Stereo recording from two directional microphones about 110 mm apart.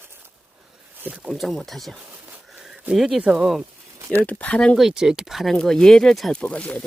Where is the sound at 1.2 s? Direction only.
Centre (ahead or behind).